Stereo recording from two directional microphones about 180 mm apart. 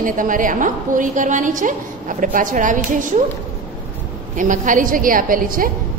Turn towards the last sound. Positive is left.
turn(degrees=-50)  # may be behind; listen again after turning